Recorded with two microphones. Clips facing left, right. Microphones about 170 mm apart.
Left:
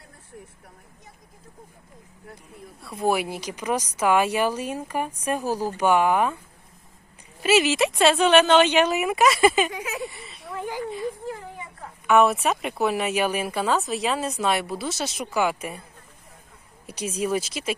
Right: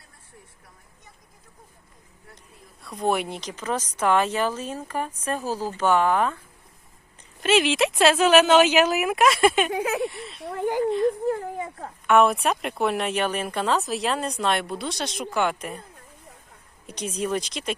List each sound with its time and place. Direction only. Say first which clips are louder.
2.8 s speech: left 1 dB; 5° left (ahead or behind)
7.4 s speech: left 1 dB; 5° left (ahead or behind)
9.7 s speech: right 7 dB; 55° right (ahead or behind)
10.0 s speech: right 6 dB; centre (ahead or behind)
10.5 s a woman's voice: right 7 dB; 60° right (ahead or behind)
12.0 s speech: even; centre (ahead or behind)
16.8 s speech: left 1 dB; 10° left (ahead or behind)